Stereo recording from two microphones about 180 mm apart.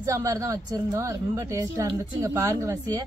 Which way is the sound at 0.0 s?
20° right (ahead or behind).